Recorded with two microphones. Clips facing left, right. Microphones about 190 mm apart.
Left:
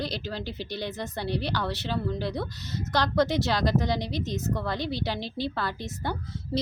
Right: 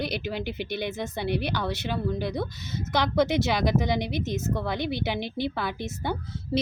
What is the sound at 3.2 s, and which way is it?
Speech, 20° right (ahead or behind).